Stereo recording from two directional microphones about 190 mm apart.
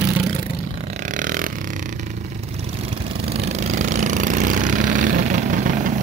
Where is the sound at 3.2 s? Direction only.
35° right (ahead or behind).